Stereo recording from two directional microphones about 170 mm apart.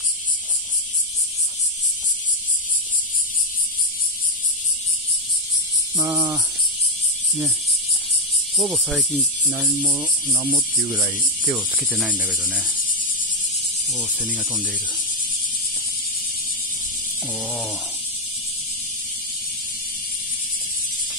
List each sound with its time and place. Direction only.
5.9 s speech: 15° right (ahead or behind)
8.5 s speech: centre (ahead or behind)
12.0 s speech: 5° right (ahead or behind)
12.4 s speech: 5° left (ahead or behind)
13.9 s speech: 5° right (ahead or behind)